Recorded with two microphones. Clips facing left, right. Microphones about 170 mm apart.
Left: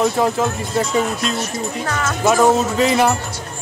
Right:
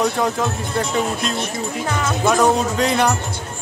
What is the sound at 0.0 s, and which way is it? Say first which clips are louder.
Speech: left 2 dB; 5° left (ahead or behind).